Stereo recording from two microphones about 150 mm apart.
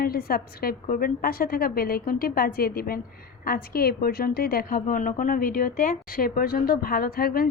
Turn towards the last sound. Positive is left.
turn(degrees=80)